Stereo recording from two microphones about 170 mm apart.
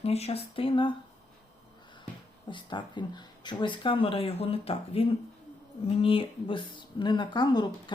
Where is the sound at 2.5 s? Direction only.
30° left (ahead or behind).